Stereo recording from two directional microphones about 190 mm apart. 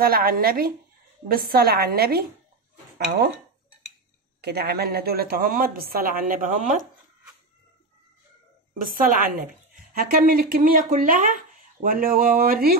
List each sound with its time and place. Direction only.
0.0 s a woman's voice: 50° right (ahead or behind)
4.4 s a woman's voice: 60° right (ahead or behind)
8.7 s a woman's voice: 45° right (ahead or behind)